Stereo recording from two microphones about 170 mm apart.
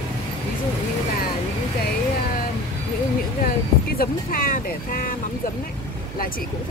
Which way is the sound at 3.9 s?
55° left (ahead or behind).